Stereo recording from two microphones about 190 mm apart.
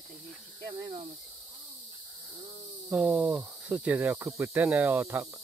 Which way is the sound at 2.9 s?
5° right (ahead or behind).